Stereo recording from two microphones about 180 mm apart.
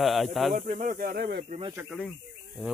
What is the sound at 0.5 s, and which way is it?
Speech, 45° right (ahead or behind).